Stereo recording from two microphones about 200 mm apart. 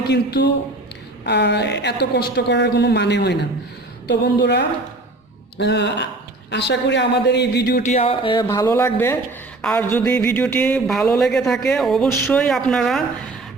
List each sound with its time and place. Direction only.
0.1 s speech: 55° left (ahead or behind)
7.8 s speech: 35° left (ahead or behind); by 13.1 s centre (ahead or behind)